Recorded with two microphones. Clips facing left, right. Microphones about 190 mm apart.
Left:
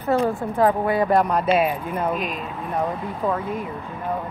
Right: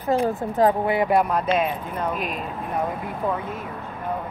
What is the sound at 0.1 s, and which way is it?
A woman's voice, 15° right (ahead or behind).